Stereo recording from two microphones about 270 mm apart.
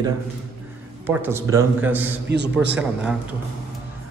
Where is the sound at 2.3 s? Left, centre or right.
Right.